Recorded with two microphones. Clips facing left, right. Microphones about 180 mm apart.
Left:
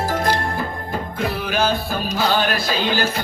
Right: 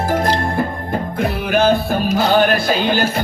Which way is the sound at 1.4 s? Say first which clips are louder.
Right 8 dB; 55° right (ahead or behind).